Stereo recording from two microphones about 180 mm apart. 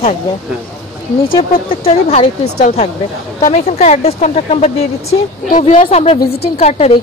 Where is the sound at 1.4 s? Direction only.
35° left (ahead or behind).